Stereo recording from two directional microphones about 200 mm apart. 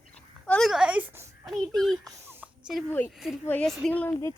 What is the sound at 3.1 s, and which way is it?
Speech, centre (ahead or behind).